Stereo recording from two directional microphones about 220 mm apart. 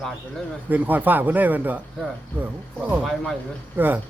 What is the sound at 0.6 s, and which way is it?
Speech, 10° right (ahead or behind).